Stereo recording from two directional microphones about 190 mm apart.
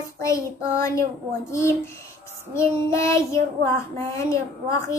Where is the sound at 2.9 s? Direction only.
15° left (ahead or behind).